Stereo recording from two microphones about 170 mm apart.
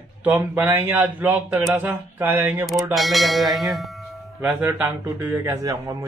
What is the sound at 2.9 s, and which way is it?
Speech, centre (ahead or behind).